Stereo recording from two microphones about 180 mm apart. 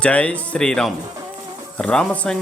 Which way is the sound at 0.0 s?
5° left (ahead or behind).